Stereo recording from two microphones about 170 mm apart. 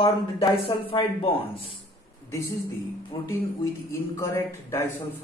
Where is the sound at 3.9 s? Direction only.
15° left (ahead or behind).